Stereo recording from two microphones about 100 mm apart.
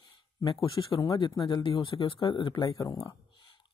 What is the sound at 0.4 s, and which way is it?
Speech, 35° left (ahead or behind).